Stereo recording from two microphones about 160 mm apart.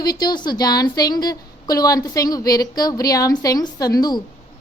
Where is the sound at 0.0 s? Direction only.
25° left (ahead or behind).